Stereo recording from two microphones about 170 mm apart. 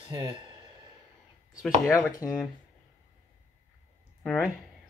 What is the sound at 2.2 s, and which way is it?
Speech, 10° right (ahead or behind).